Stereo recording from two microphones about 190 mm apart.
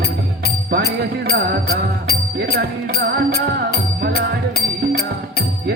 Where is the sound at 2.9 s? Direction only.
55° left (ahead or behind).